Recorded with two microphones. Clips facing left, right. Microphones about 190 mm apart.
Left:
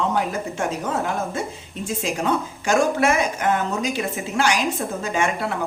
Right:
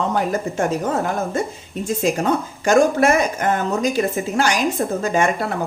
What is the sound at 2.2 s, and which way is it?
Speech, 40° right (ahead or behind).